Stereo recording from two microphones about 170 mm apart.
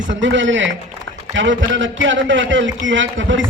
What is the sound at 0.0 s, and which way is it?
A man's voice, 90° right.